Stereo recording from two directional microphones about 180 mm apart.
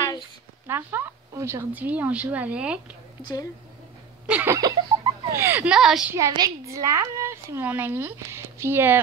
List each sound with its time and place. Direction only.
0.7 s a woman's voice: 10° right (ahead or behind)
3.2 s a woman's voice: 25° left (ahead or behind)
4.3 s a woman's voice: 10° right (ahead or behind)
6.1 s a woman's voice: 20° right (ahead or behind)